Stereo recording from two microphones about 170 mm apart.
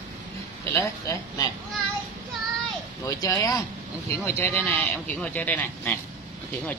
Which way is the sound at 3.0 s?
20° left (ahead or behind).